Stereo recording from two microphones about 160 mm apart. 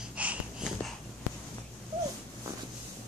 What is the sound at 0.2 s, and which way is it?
Wheeze, 10° right (ahead or behind).